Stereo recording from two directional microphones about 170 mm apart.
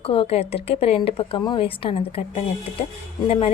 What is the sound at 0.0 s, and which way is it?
A woman's voice, 35° left (ahead or behind).